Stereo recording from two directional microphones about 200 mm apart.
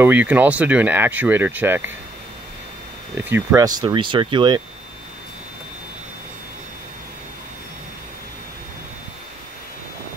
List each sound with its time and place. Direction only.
0.0 s speech: 10° right (ahead or behind)
3.3 s speech: 15° right (ahead or behind)